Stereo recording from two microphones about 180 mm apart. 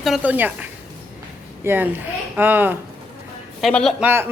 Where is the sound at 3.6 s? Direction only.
5° left (ahead or behind).